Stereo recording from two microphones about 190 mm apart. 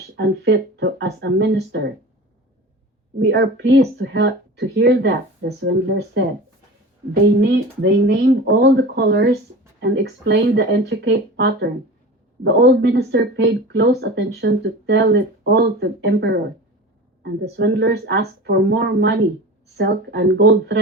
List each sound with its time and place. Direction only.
0.2 s speech: 70° right (ahead or behind)
3.2 s speech: 70° right (ahead or behind)
7.4 s speech: 65° right (ahead or behind)